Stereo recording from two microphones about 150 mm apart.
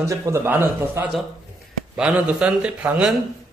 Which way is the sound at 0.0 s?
20° right (ahead or behind).